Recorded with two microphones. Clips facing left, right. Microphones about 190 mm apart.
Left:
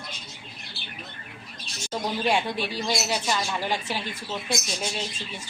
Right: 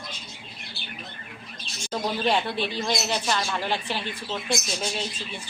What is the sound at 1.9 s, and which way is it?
Speech, 10° left (ahead or behind).